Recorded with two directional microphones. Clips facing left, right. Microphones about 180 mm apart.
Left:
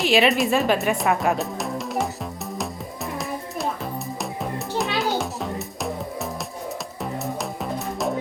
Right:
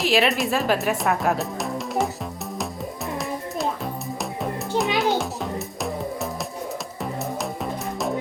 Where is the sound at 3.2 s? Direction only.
Centre (ahead or behind).